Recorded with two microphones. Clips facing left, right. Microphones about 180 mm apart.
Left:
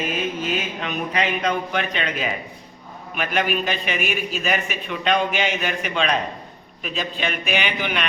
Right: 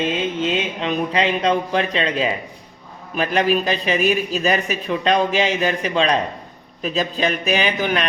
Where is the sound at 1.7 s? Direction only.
30° right (ahead or behind).